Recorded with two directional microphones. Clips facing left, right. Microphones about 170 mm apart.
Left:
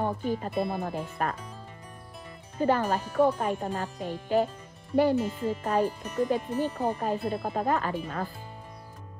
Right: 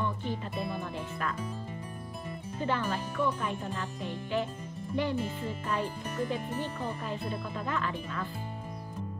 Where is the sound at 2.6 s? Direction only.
40° left (ahead or behind).